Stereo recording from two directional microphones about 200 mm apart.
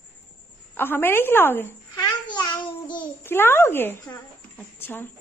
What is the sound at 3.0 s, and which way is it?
A child's voice, 10° left (ahead or behind).